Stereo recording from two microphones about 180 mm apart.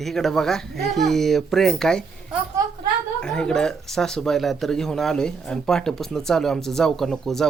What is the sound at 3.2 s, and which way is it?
Speech, 5° left (ahead or behind).